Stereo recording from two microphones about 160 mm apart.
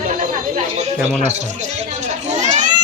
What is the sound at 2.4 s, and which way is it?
Children playing, 50° right (ahead or behind).